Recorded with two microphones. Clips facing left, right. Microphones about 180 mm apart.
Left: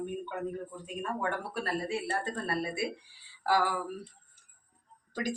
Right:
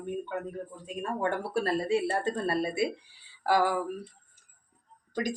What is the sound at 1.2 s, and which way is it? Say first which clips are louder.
Speech: right 9 dB; 30° right (ahead or behind).